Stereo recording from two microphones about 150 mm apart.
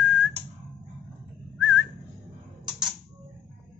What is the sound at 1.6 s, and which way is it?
Whistling, 5° right (ahead or behind).